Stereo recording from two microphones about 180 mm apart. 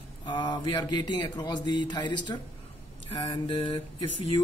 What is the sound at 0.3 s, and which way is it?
Speech, 25° left (ahead or behind).